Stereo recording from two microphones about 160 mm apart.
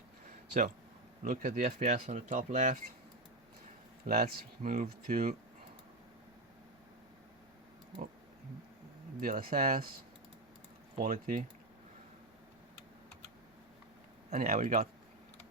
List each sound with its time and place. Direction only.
1.2 s speech: 50° right (ahead or behind)
4.1 s speech: 45° right (ahead or behind)
9.2 s speech: 60° right (ahead or behind)
10.9 s speech: 60° right (ahead or behind)
14.3 s speech: 45° right (ahead or behind)
14.5 s speech: 55° right (ahead or behind)